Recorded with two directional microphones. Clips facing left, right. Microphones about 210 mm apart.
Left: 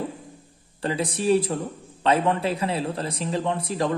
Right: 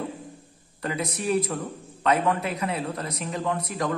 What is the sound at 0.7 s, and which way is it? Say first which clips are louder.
A man's voice: left 3 dB; 30° left (ahead or behind).